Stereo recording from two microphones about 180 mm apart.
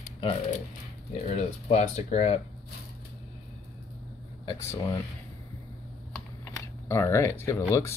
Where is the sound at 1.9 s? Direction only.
35° left (ahead or behind).